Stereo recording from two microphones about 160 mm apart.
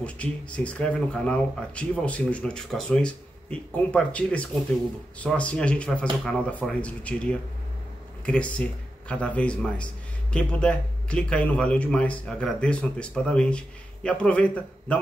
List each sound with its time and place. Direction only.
0.0 s speech: 5° left (ahead or behind)